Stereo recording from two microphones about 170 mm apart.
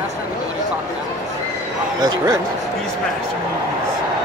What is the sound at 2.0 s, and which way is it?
Speech, 25° right (ahead or behind).